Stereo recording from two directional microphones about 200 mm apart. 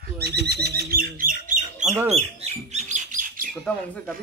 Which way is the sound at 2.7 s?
40° right (ahead or behind).